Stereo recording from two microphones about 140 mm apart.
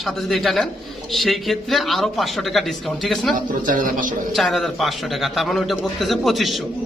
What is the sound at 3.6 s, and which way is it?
Speech, 75° right (ahead or behind).